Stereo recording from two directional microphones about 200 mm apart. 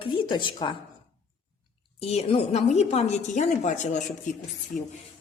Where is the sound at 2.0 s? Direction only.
30° left (ahead or behind).